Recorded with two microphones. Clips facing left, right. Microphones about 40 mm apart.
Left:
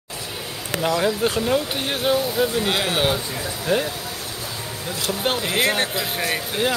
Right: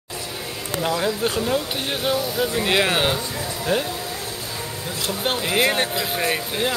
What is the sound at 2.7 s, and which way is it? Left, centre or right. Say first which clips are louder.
Speech: right 3 dB; right.